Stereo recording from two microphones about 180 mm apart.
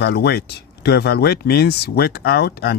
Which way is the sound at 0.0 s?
65° left (ahead or behind).